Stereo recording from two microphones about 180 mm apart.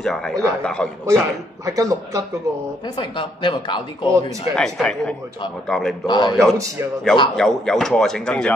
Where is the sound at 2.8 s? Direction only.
25° left (ahead or behind).